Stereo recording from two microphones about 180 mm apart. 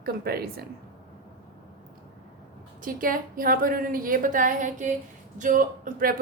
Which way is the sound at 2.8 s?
50° right (ahead or behind).